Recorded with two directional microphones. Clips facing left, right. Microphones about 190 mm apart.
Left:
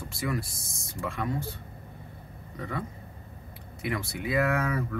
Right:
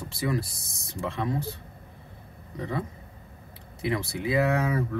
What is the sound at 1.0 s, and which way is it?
Speech, 25° right (ahead or behind).